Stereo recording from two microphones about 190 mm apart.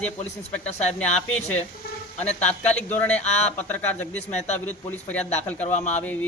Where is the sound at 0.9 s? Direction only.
5° left (ahead or behind).